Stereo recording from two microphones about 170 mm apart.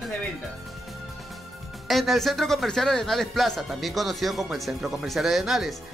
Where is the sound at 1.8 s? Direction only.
Centre (ahead or behind).